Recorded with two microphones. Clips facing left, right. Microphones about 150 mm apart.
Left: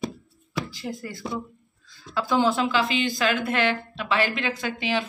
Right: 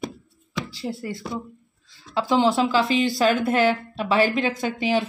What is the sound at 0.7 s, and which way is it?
A woman's voice, 25° right (ahead or behind).